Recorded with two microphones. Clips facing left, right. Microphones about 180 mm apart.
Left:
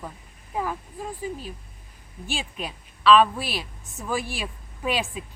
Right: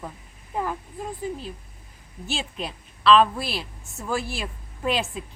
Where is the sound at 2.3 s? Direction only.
10° left (ahead or behind).